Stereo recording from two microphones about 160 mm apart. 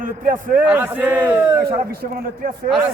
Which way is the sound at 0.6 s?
10° right (ahead or behind).